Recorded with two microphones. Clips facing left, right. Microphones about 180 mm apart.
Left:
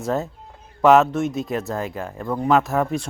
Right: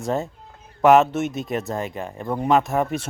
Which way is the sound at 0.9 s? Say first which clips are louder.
Even; centre (ahead or behind).